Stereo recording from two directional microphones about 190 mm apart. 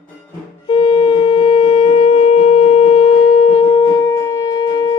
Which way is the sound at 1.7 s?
35° left (ahead or behind).